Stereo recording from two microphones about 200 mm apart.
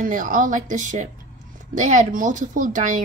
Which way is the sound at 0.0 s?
40° right (ahead or behind).